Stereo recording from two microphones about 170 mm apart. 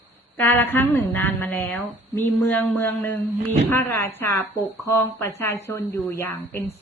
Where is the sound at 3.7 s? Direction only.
15° left (ahead or behind).